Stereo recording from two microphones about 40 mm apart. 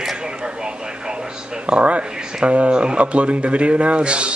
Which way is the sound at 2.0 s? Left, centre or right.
Centre.